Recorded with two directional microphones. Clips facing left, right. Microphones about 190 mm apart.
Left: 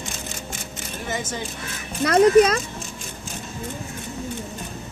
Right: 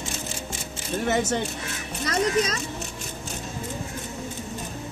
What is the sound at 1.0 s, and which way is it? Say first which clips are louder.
Speech: right 5 dB; 65° right (ahead or behind).